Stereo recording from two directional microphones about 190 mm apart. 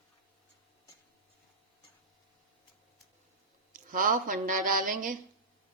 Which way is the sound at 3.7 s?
45° right (ahead or behind).